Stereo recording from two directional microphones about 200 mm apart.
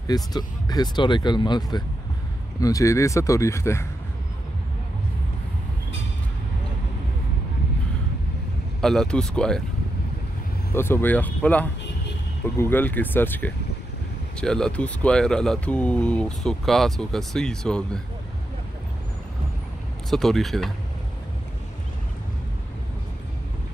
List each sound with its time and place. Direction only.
0.0 s speech: 20° left (ahead or behind)
8.8 s speech: 5° left (ahead or behind)
10.7 s speech: 10° left (ahead or behind)
20.1 s speech: centre (ahead or behind)